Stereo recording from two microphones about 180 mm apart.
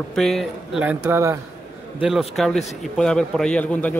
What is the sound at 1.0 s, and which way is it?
Speech, 15° right (ahead or behind).